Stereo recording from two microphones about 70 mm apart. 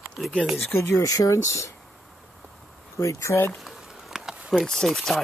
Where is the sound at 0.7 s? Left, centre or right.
Left.